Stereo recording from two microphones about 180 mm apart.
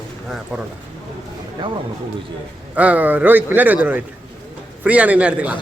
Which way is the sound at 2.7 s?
10° right (ahead or behind).